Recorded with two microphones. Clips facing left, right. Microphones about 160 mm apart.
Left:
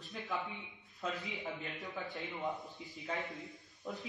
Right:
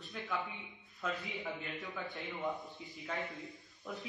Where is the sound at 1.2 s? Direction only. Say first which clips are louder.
Even; centre (ahead or behind).